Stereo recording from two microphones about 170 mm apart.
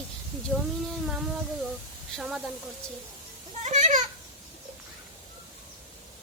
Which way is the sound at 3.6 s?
45° right (ahead or behind).